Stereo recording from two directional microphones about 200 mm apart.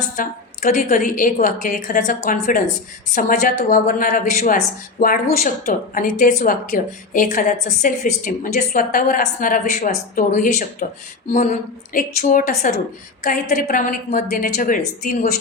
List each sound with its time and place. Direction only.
0.2 s a woman's voice: 40° left (ahead or behind)